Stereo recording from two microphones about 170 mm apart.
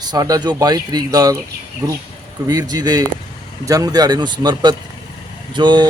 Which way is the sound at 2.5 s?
25° right (ahead or behind).